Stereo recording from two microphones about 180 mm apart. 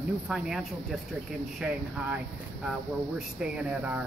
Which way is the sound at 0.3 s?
5° right (ahead or behind).